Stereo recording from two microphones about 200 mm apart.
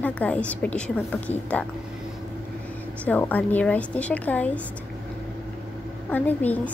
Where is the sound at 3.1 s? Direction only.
10° left (ahead or behind).